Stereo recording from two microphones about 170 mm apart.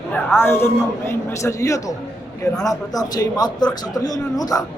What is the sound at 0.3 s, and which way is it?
A man's voice, 15° left (ahead or behind).